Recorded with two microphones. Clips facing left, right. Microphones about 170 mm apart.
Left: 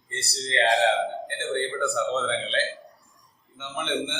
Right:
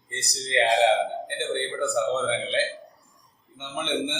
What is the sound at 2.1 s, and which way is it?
A man's voice, 15° right (ahead or behind).